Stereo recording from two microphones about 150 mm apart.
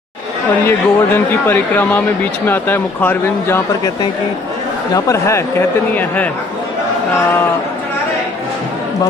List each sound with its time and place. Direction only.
0.7 s speech: 15° left (ahead or behind)
4.9 s speech: 20° left (ahead or behind)